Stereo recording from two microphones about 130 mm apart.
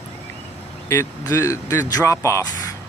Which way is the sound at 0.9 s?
20° left (ahead or behind).